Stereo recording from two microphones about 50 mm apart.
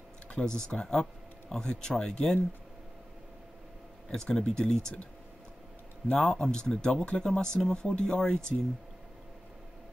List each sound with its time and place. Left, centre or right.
0.4 s speech: centre
4.1 s speech: centre
6.0 s speech: centre